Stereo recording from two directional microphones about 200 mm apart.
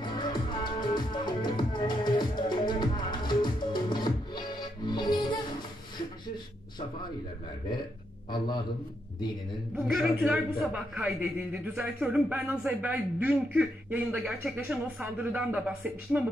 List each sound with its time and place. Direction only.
0.0 s music: 20° left (ahead or behind)
8.3 s a man's voice: 20° left (ahead or behind)
9.9 s a man's voice: 5° right (ahead or behind)